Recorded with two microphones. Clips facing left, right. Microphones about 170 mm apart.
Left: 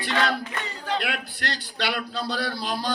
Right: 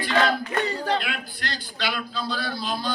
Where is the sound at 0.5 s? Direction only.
35° right (ahead or behind).